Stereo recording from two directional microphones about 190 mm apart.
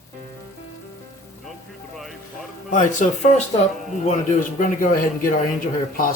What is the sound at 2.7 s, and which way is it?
A man's voice, 40° left (ahead or behind).